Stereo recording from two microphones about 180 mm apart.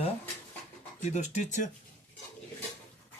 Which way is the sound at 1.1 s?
40° left (ahead or behind).